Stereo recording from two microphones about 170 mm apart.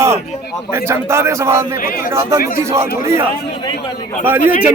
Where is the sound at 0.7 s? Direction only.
15° right (ahead or behind).